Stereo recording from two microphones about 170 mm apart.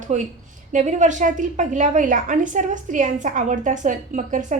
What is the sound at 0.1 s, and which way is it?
A woman's voice, 45° right (ahead or behind).